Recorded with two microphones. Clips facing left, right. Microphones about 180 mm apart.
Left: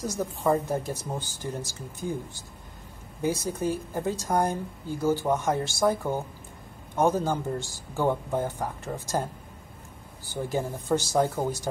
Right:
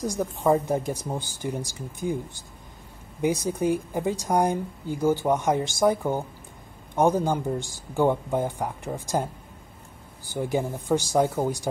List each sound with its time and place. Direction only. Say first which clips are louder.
0.0 s a woman's voice: right 3 dB; 15° right (ahead or behind)
3.2 s a woman's voice: right 3 dB; 15° right (ahead or behind)
10.3 s a woman's voice: right 3 dB; 10° right (ahead or behind)